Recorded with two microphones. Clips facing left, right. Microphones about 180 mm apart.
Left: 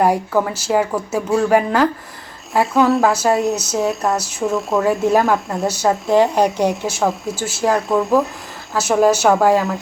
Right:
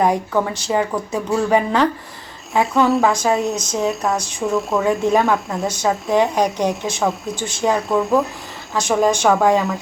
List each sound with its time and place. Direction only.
0.0 s speech: 5° left (ahead or behind)